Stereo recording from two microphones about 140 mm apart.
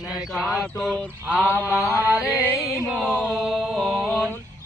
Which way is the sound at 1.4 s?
15° left (ahead or behind).